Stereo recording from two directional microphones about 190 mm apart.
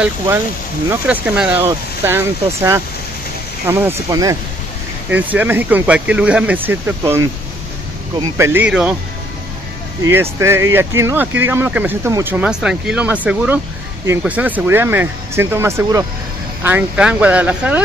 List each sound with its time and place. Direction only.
0.8 s speech: 10° right (ahead or behind)
10.0 s speech: 15° right (ahead or behind)